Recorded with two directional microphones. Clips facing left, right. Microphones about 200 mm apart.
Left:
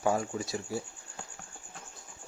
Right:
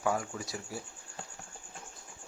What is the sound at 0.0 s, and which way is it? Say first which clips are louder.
Speech: left 3 dB; 25° left (ahead or behind).